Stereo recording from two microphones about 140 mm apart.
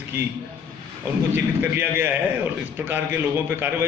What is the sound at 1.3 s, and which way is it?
A man's voice, 15° right (ahead or behind).